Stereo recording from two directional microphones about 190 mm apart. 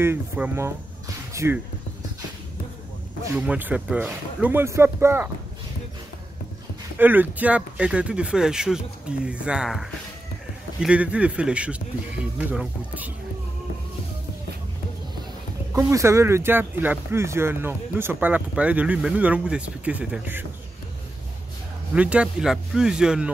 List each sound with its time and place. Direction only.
0.0 s speech: 10° right (ahead or behind)
1.3 s basketball bounce: 15° right (ahead or behind)
3.3 s speech: 10° right (ahead or behind)
7.0 s speech: 10° right (ahead or behind)
15.7 s speech: 15° right (ahead or behind)
21.9 s speech: 5° right (ahead or behind)